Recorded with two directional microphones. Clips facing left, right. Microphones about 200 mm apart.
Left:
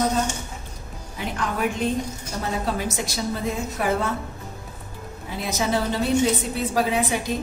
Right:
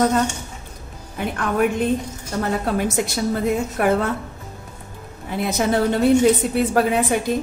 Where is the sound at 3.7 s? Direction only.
55° right (ahead or behind).